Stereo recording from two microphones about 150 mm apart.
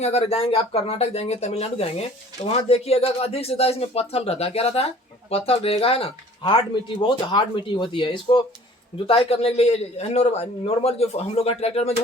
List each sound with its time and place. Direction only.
0.0 s speech: 45° left (ahead or behind)